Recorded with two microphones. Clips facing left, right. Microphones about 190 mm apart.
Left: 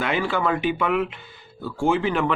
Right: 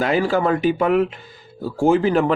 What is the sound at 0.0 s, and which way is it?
Speech, 40° right (ahead or behind).